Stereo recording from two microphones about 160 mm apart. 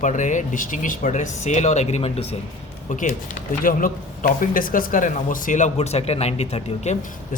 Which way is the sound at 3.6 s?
55° left (ahead or behind).